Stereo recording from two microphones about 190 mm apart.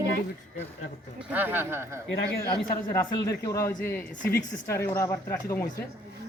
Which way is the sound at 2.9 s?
15° left (ahead or behind).